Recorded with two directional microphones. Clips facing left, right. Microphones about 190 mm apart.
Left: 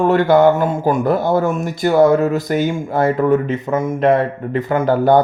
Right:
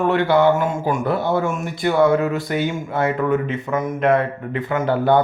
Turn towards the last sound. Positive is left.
turn(degrees=40)  # may be behind; listen again after turning